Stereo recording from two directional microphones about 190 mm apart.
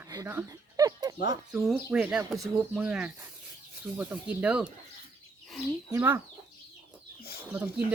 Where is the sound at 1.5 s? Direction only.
5° right (ahead or behind).